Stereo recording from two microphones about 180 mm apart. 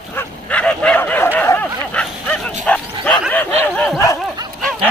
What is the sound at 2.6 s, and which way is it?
Bow-wow, 5° left (ahead or behind).